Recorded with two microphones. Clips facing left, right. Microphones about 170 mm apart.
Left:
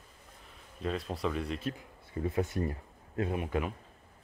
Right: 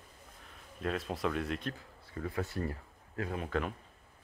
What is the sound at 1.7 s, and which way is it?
Speech, 20° left (ahead or behind).